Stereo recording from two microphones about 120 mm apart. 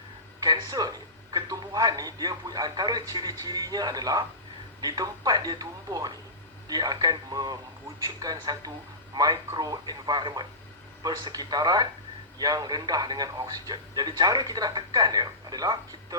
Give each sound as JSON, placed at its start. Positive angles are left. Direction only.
{"t": 0.3, "sound": "speech", "side_deg": -35}